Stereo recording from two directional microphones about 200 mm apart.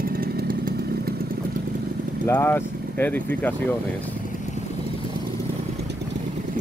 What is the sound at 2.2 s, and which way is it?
Speech, 10° left (ahead or behind).